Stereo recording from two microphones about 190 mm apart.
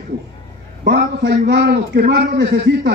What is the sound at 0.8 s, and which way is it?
A man's voice, 60° right (ahead or behind).